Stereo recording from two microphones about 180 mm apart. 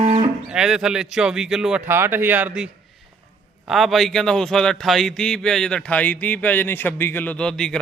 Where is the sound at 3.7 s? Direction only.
Centre (ahead or behind).